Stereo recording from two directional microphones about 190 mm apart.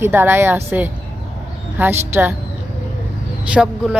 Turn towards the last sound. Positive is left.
turn(degrees=-5)  # may be behind; listen again after turning